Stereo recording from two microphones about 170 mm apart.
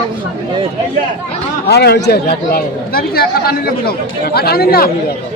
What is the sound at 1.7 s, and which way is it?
Speech, 75° left (ahead or behind).